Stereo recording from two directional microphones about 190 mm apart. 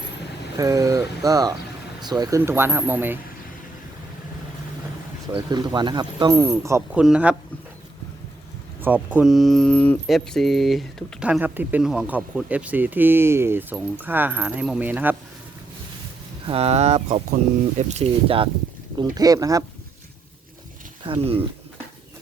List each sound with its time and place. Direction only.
0.5 s speech: 15° right (ahead or behind)
5.3 s speech: 25° right (ahead or behind); by 7.3 s 5° right (ahead or behind)
8.8 s speech: 10° right (ahead or behind)
16.5 s speech: 30° right (ahead or behind)
18.9 s speech: 20° right (ahead or behind)
21.0 s speech: 30° right (ahead or behind)